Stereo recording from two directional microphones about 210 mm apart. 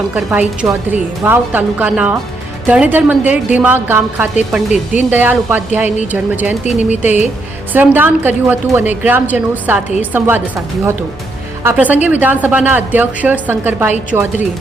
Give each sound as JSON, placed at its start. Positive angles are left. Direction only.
{"t": 0.1, "sound": "a woman's voice", "side_deg": -10}
{"t": 6.7, "sound": "speech", "side_deg": 35}
{"t": 7.7, "sound": "a woman's voice", "side_deg": -10}
{"t": 11.6, "sound": "a woman's voice", "side_deg": -5}